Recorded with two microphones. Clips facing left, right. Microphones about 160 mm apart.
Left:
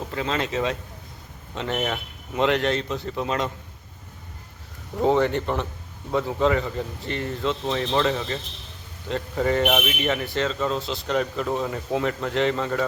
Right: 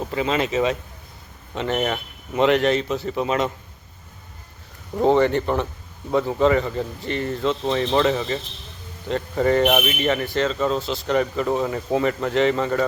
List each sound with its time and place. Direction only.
0.1 s speech: 5° right (ahead or behind)
4.9 s speech: centre (ahead or behind)